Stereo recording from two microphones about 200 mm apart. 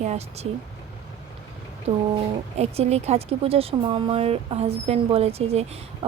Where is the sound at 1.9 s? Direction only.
35° right (ahead or behind).